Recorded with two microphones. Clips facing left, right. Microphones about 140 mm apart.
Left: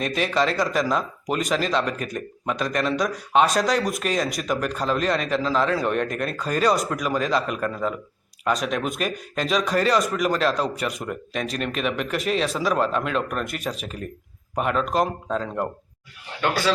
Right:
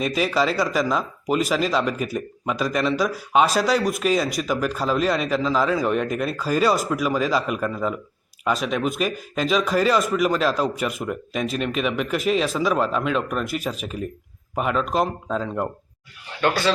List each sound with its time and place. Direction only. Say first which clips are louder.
0.0 s speech: right 1 dB; 5° right (ahead or behind)
16.4 s speech: right 2 dB; 10° left (ahead or behind)